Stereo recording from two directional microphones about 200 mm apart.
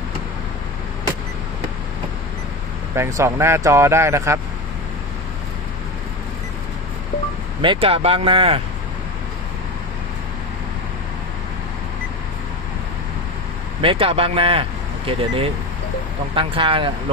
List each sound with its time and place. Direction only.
3.0 s speech: 10° right (ahead or behind)
7.6 s speech: 25° right (ahead or behind)
13.7 s speech: 25° right (ahead or behind)